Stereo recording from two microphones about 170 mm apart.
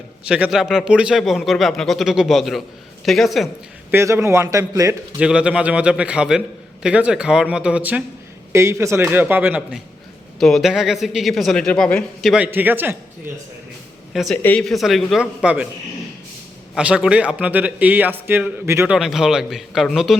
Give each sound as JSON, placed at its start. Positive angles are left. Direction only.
{"t": 0.3, "sound": "a man's voice", "side_deg": -5}
{"t": 3.9, "sound": "a man's voice", "side_deg": -15}
{"t": 5.2, "sound": "a man's voice", "side_deg": -5}
{"t": 14.1, "sound": "a man's voice", "side_deg": 0}
{"t": 16.7, "sound": "a man's voice", "side_deg": -5}
{"t": 18.9, "sound": "a man's voice", "side_deg": -5}